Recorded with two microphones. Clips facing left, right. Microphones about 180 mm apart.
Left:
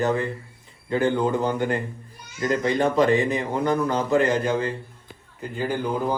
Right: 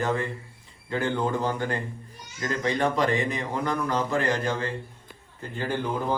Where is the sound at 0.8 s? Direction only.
20° left (ahead or behind).